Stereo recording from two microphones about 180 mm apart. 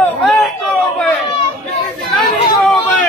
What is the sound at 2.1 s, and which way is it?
Chatter, centre (ahead or behind).